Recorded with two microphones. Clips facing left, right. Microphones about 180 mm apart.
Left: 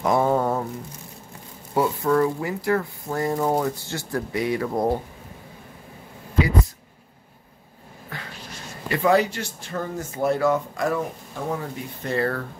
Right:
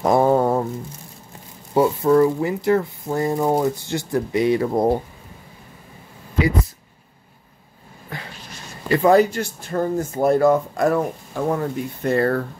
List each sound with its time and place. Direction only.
0.0 s a sound: 35° right (ahead or behind)
1.7 s speech: 25° right (ahead or behind)
8.8 s speech: 40° right (ahead or behind)